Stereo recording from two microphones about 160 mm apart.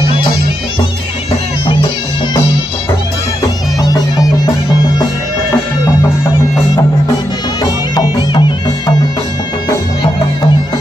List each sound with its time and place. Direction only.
3.8 s music: 25° left (ahead or behind)
7.6 s music: 25° left (ahead or behind)